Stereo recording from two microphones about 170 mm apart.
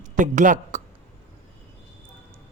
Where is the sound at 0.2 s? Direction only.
45° right (ahead or behind).